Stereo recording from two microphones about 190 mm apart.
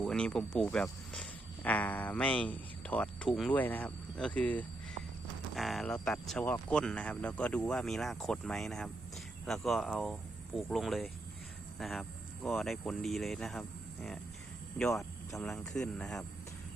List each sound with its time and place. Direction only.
0.0 s speech: 5° left (ahead or behind)